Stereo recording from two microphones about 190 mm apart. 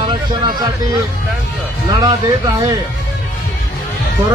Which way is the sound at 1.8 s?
20° right (ahead or behind).